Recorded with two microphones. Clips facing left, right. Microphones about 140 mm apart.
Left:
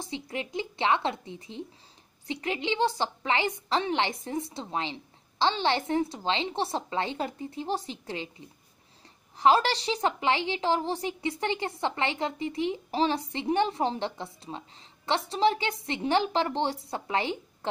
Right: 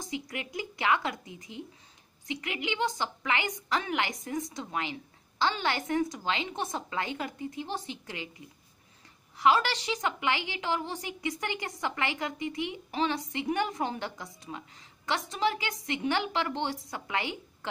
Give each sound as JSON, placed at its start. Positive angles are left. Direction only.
{"t": 0.0, "sound": "a woman's voice", "side_deg": 30}